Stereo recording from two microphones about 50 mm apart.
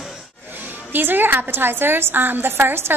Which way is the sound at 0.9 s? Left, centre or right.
Right.